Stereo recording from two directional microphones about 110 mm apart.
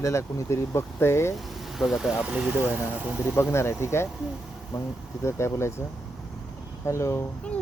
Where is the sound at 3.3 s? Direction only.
25° left (ahead or behind).